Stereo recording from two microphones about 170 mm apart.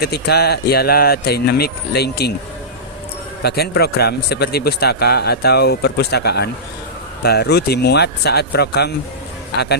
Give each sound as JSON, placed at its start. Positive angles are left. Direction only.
{"t": 0.0, "sound": "speech", "side_deg": 70}
{"t": 3.4, "sound": "speech", "side_deg": 70}